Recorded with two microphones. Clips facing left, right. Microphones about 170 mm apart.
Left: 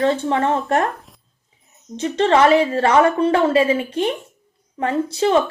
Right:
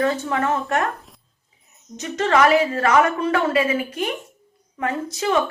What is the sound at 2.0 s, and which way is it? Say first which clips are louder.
A woman's voice: left 3 dB; 30° left (ahead or behind).